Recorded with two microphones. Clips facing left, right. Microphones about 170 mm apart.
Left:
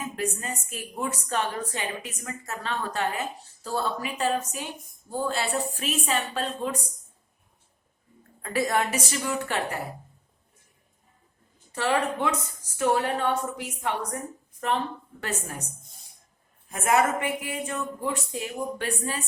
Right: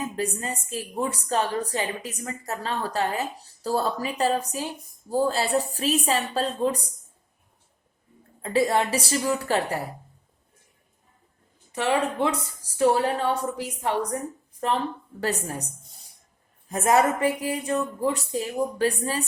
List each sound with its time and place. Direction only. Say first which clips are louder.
0.0 s a woman's voice: right 2 dB; 35° right (ahead or behind)
8.4 s a woman's voice: right 3 dB; 25° right (ahead or behind)
11.7 s a woman's voice: right 1 dB; 20° right (ahead or behind)
12.3 s a woman's voice: right 1 dB; 30° right (ahead or behind)
15.2 s a woman's voice: right 6 dB; 35° right (ahead or behind)